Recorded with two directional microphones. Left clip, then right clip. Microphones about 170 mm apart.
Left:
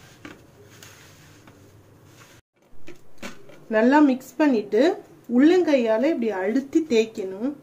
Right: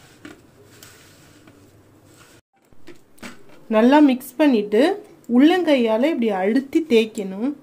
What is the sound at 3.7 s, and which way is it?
Speech, 30° right (ahead or behind).